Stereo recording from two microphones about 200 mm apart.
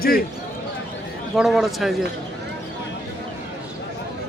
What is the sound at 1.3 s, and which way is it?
Speech, centre (ahead or behind).